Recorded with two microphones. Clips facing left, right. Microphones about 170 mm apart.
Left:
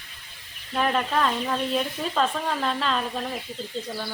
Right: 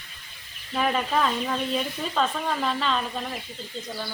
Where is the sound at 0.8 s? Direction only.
5° right (ahead or behind).